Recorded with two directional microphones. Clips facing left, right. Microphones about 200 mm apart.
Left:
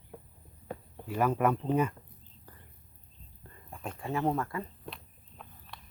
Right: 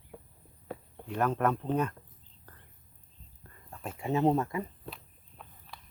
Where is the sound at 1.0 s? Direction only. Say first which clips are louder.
Left 1 dB; 5° left (ahead or behind).